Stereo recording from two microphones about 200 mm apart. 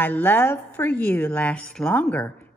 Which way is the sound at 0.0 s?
10° left (ahead or behind).